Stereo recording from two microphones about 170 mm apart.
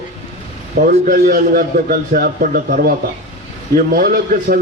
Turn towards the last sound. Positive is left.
turn(degrees=-60)  # may be behind; listen again after turning